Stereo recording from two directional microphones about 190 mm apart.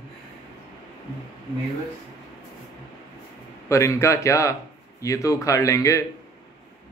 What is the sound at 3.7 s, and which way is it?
Speech, 15° left (ahead or behind).